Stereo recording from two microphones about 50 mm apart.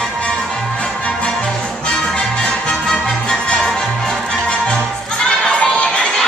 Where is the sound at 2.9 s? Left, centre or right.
Centre.